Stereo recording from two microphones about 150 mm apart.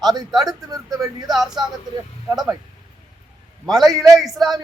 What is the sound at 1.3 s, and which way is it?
A man's voice, centre (ahead or behind).